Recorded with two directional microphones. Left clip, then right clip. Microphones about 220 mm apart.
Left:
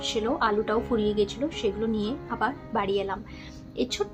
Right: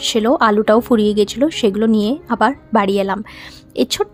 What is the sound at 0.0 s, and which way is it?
A woman's voice, 50° right (ahead or behind).